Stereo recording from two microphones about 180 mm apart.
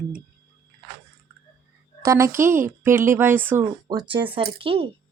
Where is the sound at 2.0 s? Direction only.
15° right (ahead or behind).